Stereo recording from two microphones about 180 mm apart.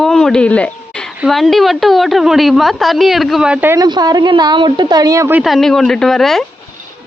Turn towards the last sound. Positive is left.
turn(degrees=0)  # may be behind; listen again after turning